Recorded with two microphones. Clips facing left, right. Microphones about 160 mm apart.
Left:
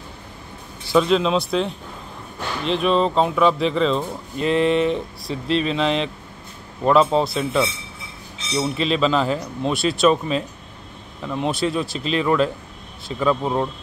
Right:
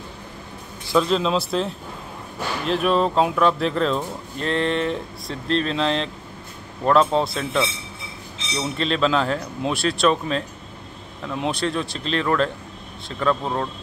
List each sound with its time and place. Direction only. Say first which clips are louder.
0.8 s speech: left 2 dB; centre (ahead or behind)